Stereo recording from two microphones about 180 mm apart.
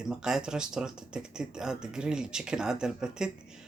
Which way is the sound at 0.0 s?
5° right (ahead or behind).